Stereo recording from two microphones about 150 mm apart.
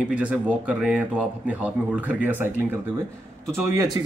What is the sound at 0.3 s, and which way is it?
Speech, 10° right (ahead or behind).